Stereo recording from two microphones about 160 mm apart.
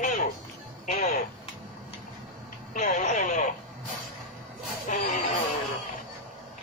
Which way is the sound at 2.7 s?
50° left (ahead or behind).